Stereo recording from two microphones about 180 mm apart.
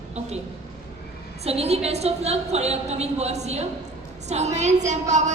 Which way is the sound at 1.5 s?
35° right (ahead or behind).